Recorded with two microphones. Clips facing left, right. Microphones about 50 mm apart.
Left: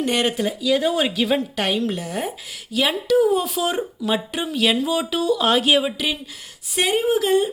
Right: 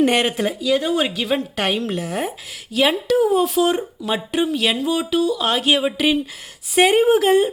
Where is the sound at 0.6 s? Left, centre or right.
Centre.